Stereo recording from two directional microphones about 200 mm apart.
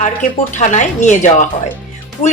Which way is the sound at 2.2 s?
35° left (ahead or behind).